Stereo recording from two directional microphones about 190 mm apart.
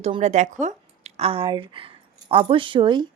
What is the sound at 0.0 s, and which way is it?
A woman's voice, 35° right (ahead or behind).